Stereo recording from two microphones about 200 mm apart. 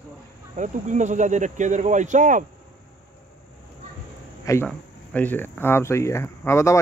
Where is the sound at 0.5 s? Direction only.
35° right (ahead or behind).